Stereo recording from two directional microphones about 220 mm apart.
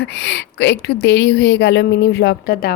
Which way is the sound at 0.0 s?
50° left (ahead or behind).